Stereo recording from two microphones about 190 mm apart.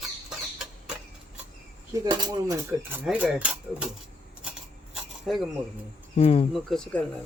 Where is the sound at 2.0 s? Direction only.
25° right (ahead or behind).